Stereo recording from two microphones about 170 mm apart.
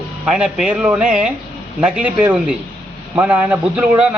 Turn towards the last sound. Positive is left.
turn(degrees=-10)  # may be behind; listen again after turning